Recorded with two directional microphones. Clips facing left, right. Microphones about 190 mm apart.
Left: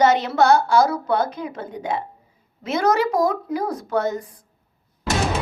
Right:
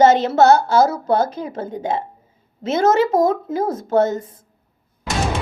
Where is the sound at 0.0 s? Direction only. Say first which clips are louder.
Right 4 dB; 25° right (ahead or behind).